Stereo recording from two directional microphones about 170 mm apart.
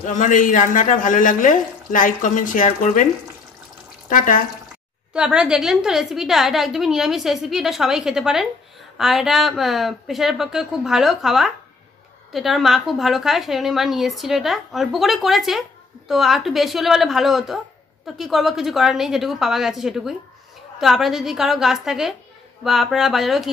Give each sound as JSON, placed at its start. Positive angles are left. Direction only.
{"t": 0.0, "sound": "speech", "side_deg": 50}
{"t": 5.1, "sound": "a woman's voice", "side_deg": -5}